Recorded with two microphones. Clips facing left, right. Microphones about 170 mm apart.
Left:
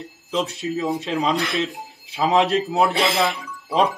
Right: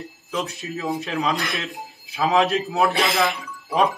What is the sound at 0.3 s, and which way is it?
Speech, 20° left (ahead or behind).